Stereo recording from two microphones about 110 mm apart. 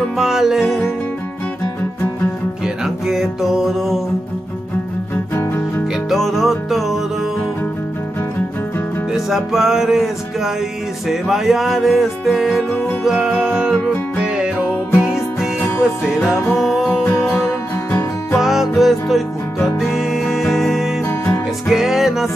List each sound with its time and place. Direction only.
0.2 s music: 5° right (ahead or behind)
2.6 s music: 5° right (ahead or behind)
5.1 s music: 20° left (ahead or behind)
6.0 s music: centre (ahead or behind)
9.1 s music: 5° right (ahead or behind)
14.9 s music: 20° left (ahead or behind)
15.8 s music: 5° right (ahead or behind)
17.0 s music: 20° left (ahead or behind)
18.4 s music: centre (ahead or behind)
21.0 s music: 15° left (ahead or behind)
21.6 s music: 5° right (ahead or behind)